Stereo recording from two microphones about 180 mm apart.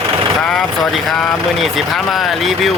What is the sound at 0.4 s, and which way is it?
Speech, centre (ahead or behind).